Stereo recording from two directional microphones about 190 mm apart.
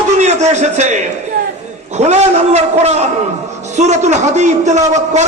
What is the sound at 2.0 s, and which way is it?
A man's voice, 35° right (ahead or behind).